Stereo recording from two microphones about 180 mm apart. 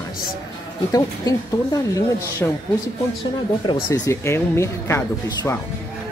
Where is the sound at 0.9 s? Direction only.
20° left (ahead or behind).